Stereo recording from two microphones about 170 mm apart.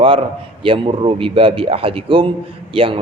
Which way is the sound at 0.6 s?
30° right (ahead or behind).